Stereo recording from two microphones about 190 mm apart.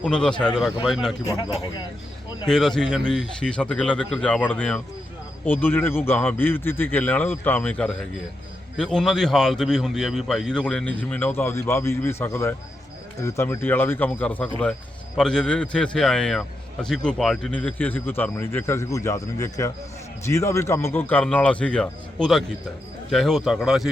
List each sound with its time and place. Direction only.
0.0 s a man's voice: 5° left (ahead or behind)
1.2 s a man's voice: 15° left (ahead or behind)
2.5 s a man's voice: 5° left (ahead or behind)